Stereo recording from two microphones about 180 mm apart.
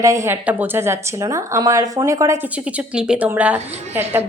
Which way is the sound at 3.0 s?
5° right (ahead or behind).